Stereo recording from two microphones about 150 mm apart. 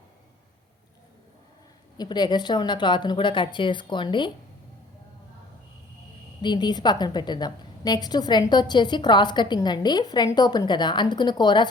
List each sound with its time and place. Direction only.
2.0 s a woman's voice: 30° left (ahead or behind)
6.4 s a woman's voice: 30° left (ahead or behind)